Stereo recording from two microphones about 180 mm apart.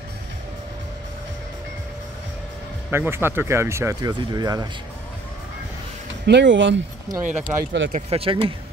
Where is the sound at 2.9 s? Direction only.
10° right (ahead or behind).